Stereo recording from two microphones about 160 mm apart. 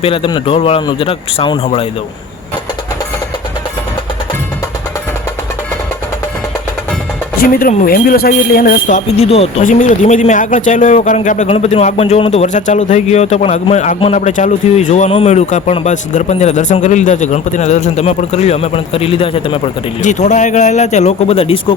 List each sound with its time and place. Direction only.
0.0 s speech: 35° left (ahead or behind)
7.3 s speech: 65° left (ahead or behind); by 9.6 s 40° left (ahead or behind)
9.6 s speech: 55° left (ahead or behind)
11.4 s speech: 40° left (ahead or behind)